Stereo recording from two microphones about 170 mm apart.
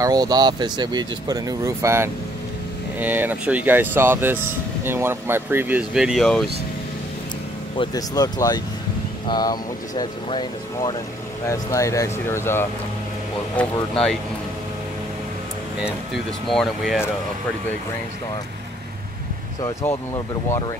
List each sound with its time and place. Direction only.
0.0 s speech: 25° right (ahead or behind); by 6.5 s centre (ahead or behind)
7.7 s speech: 25° left (ahead or behind); by 14.1 s 5° left (ahead or behind)
16.4 s speech: centre (ahead or behind)
19.6 s speech: 15° left (ahead or behind)